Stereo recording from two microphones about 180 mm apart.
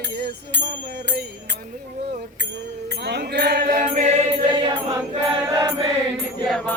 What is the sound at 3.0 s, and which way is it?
Mantra, 65° right (ahead or behind).